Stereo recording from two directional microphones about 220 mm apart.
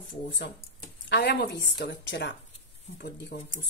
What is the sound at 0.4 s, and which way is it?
Speech, 50° left (ahead or behind).